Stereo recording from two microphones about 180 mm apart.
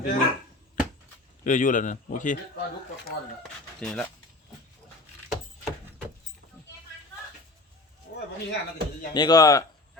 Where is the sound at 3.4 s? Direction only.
5° left (ahead or behind).